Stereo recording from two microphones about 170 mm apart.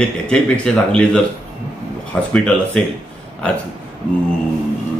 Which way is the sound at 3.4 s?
5° left (ahead or behind).